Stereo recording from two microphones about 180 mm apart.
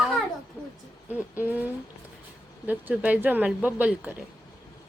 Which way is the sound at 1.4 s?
10° right (ahead or behind).